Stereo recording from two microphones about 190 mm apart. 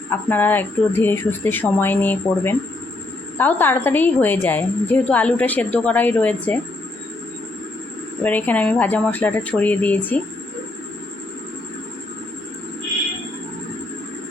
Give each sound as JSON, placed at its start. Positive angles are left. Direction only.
{"t": 0.3, "sound": "a woman's voice", "side_deg": 10}
{"t": 8.2, "sound": "a woman's voice", "side_deg": 10}